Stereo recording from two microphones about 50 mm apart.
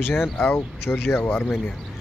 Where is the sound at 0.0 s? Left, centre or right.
Left.